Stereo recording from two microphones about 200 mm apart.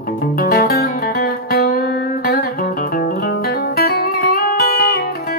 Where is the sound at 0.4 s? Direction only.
50° left (ahead or behind).